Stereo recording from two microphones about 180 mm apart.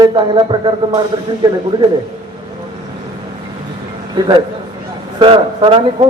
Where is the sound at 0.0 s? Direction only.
25° right (ahead or behind).